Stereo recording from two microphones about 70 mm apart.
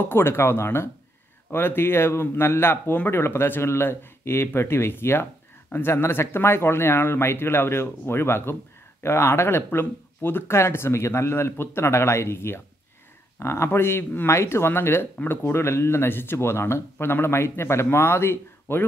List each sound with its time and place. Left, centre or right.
0.0 s speech: left